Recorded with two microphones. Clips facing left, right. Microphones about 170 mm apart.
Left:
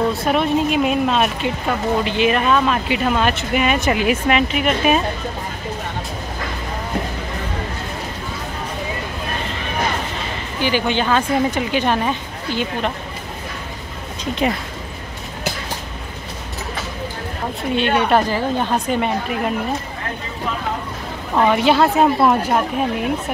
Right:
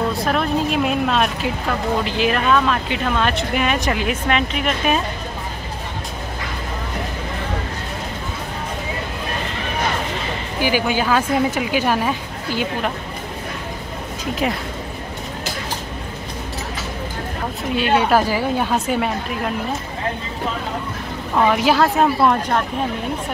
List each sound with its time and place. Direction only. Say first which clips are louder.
0.1 s speech: left 2 dB; centre (ahead or behind)
10.6 s speech: even; 10° right (ahead or behind)
14.4 s speech: left 2 dB; centre (ahead or behind)
17.7 s speech: even; 5° right (ahead or behind)
21.4 s speech: left 1 dB; centre (ahead or behind)